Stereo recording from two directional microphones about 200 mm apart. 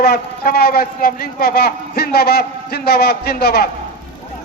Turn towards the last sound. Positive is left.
turn(degrees=55)  # may be behind; listen again after turning